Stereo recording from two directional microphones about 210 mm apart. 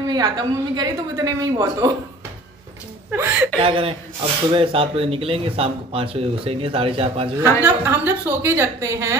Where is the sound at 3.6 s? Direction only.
25° right (ahead or behind).